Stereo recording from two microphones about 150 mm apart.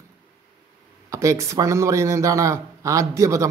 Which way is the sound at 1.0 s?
20° right (ahead or behind).